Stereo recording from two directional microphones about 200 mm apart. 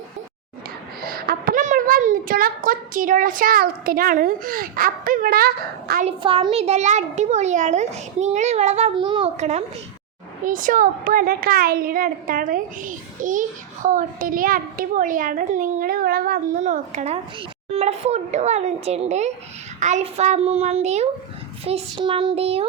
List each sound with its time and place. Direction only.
1.0 s a child's voice: 50° right (ahead or behind)
6.1 s a child's voice: 25° right (ahead or behind)
21.6 s child singing: 30° right (ahead or behind)